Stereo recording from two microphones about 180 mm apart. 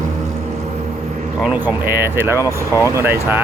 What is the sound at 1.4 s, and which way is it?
Speech, 10° right (ahead or behind).